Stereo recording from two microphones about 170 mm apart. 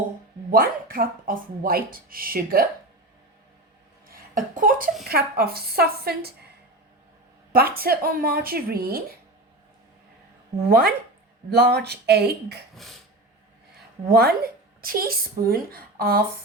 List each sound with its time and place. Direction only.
0.5 s speech: 60° right (ahead or behind)
4.1 s speech: 55° right (ahead or behind)
5.0 s a woman's voice: 65° right (ahead or behind)
7.5 s speech: 60° right (ahead or behind)
10.7 s a woman's voice: 65° right (ahead or behind)
12.7 s a sound: centre (ahead or behind)
14.1 s speech: 65° right (ahead or behind)